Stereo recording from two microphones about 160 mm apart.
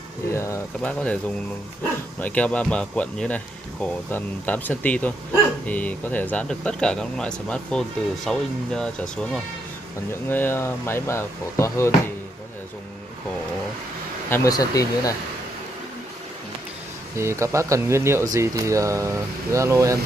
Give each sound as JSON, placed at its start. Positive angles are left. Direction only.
{"t": 0.3, "sound": "speech", "side_deg": 15}
{"t": 14.3, "sound": "speech", "side_deg": 20}
{"t": 17.2, "sound": "speech", "side_deg": -15}